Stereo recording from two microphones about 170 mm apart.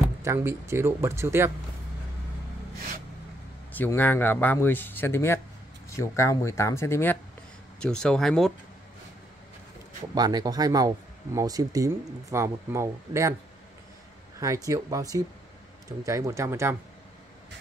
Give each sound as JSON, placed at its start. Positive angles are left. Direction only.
{"t": 0.2, "sound": "speech", "side_deg": -15}
{"t": 3.7, "sound": "speech", "side_deg": 10}
{"t": 10.1, "sound": "speech", "side_deg": -25}
{"t": 14.4, "sound": "speech", "side_deg": -20}